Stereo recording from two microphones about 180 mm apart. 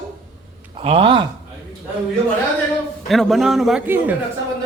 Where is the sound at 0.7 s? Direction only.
30° right (ahead or behind).